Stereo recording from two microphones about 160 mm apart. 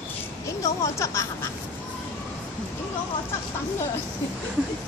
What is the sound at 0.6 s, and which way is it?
Speech, 20° left (ahead or behind).